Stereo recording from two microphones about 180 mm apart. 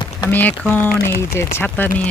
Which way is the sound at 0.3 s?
10° left (ahead or behind).